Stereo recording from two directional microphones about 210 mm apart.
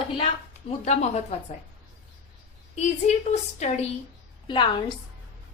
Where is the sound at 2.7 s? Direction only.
30° left (ahead or behind).